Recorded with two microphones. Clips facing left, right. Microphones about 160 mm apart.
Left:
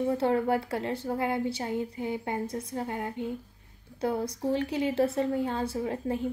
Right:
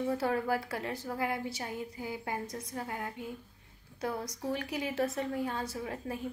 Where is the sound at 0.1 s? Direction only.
25° left (ahead or behind).